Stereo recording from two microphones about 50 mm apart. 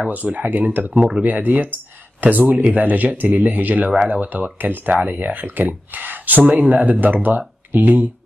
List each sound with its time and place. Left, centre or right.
0.1 s speech: right
0.9 s speech: centre
1.2 s speech: right